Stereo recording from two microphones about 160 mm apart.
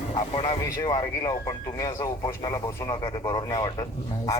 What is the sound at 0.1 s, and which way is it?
Speech, 35° left (ahead or behind).